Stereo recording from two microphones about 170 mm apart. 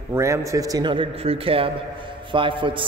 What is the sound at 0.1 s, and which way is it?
A man's voice, 15° right (ahead or behind).